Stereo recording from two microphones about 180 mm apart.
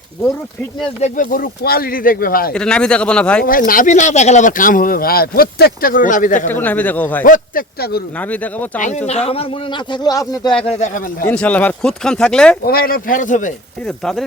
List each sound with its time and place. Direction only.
1.0 s speech: 50° left (ahead or behind)
2.5 s speech: 5° left (ahead or behind)
3.7 s speech: 45° left (ahead or behind)
6.5 s speech: 10° left (ahead or behind)
7.3 s speech: 50° left (ahead or behind)
8.2 s speech: 10° left (ahead or behind)
9.0 s speech: 35° left (ahead or behind); by 10.5 s 20° left (ahead or behind)
10.7 s speech: 40° left (ahead or behind)
11.3 s speech: 10° left (ahead or behind)
12.6 s speech: 55° left (ahead or behind)
13.8 s speech: 5° left (ahead or behind)